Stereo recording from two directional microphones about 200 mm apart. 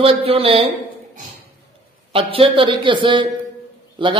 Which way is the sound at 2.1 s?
25° right (ahead or behind).